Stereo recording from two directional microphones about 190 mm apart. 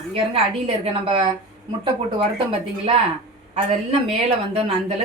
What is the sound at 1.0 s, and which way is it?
Speech, 30° right (ahead or behind).